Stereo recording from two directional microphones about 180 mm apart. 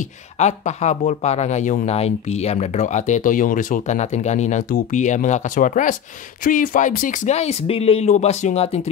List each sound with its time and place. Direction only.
0.4 s speech: 40° left (ahead or behind)